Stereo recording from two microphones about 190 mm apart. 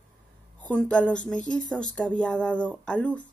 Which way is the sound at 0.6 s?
5° left (ahead or behind).